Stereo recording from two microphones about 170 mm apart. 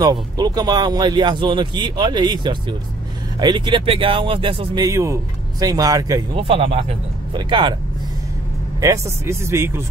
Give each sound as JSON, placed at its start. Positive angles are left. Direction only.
{"t": 0.0, "sound": "speech", "side_deg": -20}
{"t": 6.3, "sound": "speech", "side_deg": -30}
{"t": 8.8, "sound": "speech", "side_deg": -15}